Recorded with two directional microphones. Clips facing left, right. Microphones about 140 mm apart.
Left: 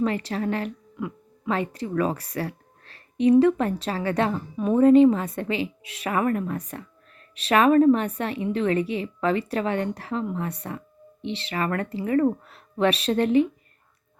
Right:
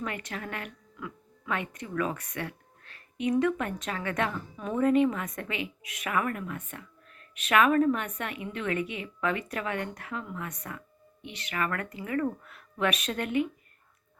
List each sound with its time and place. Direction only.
0.0 s a woman's voice: 30° left (ahead or behind)